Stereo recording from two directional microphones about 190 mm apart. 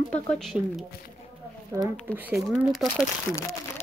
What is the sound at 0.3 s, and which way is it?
Speech, centre (ahead or behind).